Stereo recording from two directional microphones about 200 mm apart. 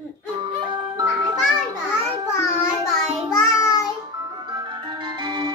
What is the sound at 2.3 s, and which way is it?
Child singing, 10° left (ahead or behind).